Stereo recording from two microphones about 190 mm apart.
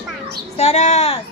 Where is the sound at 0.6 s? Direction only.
35° left (ahead or behind).